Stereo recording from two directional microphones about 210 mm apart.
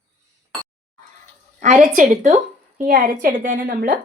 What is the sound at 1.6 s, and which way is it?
A woman's voice, 35° right (ahead or behind).